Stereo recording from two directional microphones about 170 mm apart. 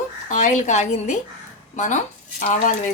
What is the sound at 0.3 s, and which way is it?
Speech, 45° left (ahead or behind).